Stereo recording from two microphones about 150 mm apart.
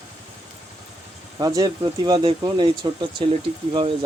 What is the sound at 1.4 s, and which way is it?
Speech, 25° right (ahead or behind).